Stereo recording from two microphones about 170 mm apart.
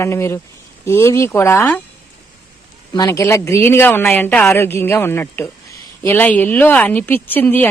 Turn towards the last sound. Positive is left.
turn(degrees=10)  # may be behind; listen again after turning